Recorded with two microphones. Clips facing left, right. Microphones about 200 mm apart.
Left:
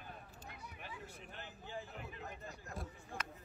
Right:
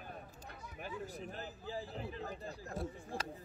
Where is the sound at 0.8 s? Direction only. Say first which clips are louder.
Right 10 dB; 35° right (ahead or behind).